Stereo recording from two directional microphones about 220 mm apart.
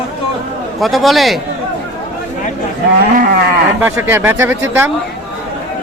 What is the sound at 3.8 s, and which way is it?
Speech, 10° right (ahead or behind).